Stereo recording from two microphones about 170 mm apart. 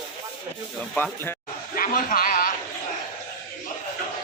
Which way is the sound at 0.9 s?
10° left (ahead or behind).